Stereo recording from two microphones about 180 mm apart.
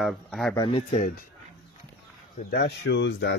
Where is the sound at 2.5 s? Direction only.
70° left (ahead or behind).